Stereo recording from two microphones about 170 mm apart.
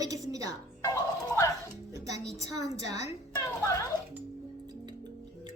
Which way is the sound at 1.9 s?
20° right (ahead or behind).